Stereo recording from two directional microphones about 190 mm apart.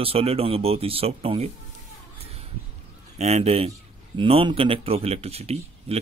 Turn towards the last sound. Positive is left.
turn(degrees=-35)  # may be behind; listen again after turning